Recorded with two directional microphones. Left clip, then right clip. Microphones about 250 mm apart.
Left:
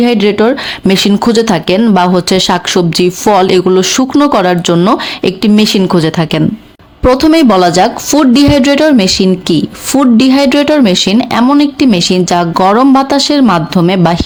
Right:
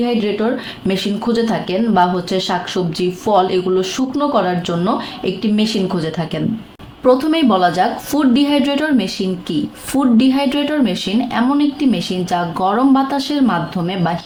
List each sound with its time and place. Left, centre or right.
0.0 s speech: left